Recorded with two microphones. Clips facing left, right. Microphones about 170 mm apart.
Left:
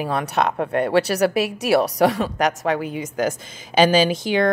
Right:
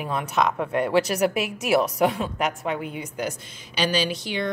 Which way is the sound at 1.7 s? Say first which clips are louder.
Left 2 dB; 65° left (ahead or behind).